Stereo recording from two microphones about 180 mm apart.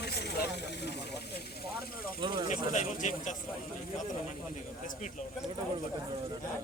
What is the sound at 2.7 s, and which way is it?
Speech, 45° left (ahead or behind).